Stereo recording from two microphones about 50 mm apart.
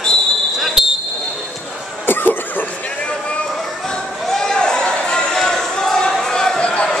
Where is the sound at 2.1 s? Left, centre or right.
Left.